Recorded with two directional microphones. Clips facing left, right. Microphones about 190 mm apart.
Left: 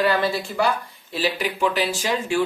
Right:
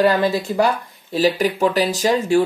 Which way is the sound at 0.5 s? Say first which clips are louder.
Right 4 dB; 40° right (ahead or behind).